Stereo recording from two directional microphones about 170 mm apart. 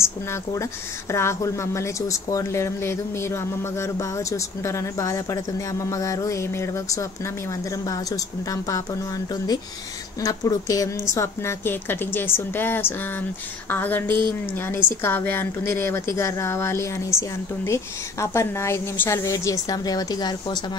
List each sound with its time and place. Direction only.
0.0 s a woman's voice: 15° left (ahead or behind)